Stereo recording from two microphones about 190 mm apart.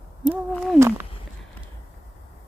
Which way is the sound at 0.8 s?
10° right (ahead or behind).